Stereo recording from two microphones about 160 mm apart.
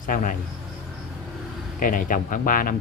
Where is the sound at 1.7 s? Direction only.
60° left (ahead or behind).